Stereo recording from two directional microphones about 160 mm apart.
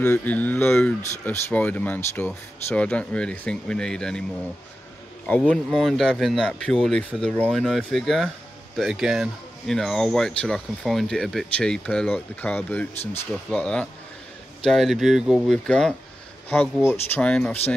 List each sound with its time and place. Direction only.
0.0 s speech: 10° left (ahead or behind)
5.5 s speech: centre (ahead or behind)